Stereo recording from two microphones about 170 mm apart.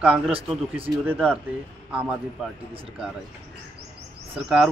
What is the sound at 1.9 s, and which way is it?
Speech, 5° right (ahead or behind).